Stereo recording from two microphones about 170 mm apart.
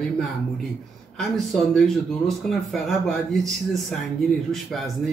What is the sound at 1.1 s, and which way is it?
Speech, centre (ahead or behind).